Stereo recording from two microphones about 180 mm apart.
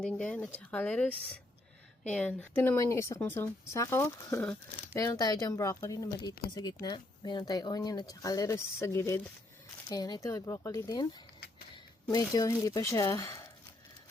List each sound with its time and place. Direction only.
0.0 s speech: 5° left (ahead or behind)
12.1 s speech: 20° left (ahead or behind)